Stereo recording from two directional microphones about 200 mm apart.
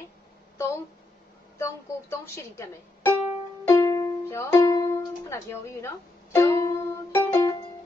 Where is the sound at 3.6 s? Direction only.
20° left (ahead or behind).